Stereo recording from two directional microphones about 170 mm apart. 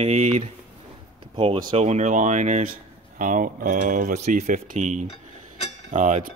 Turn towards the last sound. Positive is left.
turn(degrees=-45)  # may be behind; listen again after turning